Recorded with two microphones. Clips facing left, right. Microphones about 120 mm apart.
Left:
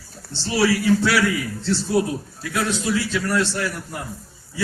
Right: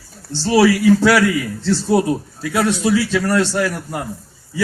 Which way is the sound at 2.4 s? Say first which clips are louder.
Right 6 dB; 90° right.